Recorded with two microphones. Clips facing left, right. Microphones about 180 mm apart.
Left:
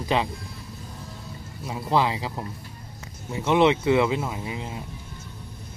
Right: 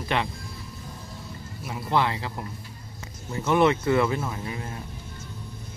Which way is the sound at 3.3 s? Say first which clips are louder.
Left 1 dB; 15° left (ahead or behind).